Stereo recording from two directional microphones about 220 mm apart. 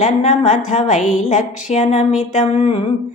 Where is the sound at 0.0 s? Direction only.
35° left (ahead or behind).